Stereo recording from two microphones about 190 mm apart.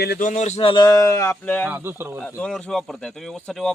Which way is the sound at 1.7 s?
10° right (ahead or behind).